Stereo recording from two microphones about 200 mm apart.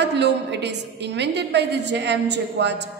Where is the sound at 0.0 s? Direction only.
60° right (ahead or behind).